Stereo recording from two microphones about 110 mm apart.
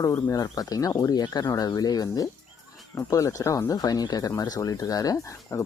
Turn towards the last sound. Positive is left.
turn(degrees=30)  # may be behind; listen again after turning